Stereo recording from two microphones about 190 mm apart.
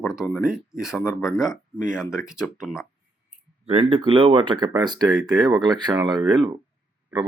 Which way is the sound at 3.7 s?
30° right (ahead or behind).